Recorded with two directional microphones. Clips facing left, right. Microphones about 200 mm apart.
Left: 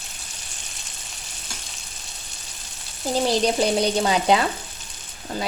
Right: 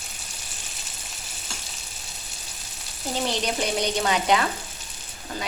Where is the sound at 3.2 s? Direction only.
35° left (ahead or behind).